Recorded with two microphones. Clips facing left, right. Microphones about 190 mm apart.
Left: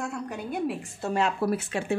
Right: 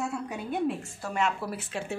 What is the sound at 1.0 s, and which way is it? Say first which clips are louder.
Speech: left 4 dB; 35° left (ahead or behind).